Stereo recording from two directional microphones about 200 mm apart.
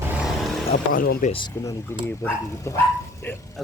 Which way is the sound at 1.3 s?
20° left (ahead or behind).